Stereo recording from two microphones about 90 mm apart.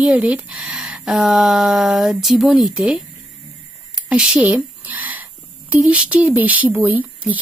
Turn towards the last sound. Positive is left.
turn(degrees=-20)  # may be behind; listen again after turning